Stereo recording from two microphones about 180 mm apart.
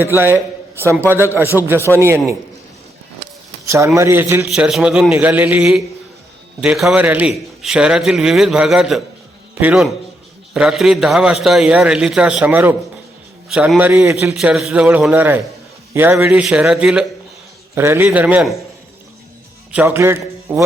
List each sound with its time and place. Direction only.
0.0 s a man's voice: 10° right (ahead or behind)
3.9 s a man's voice: 15° right (ahead or behind)
19.7 s a man's voice: 15° right (ahead or behind)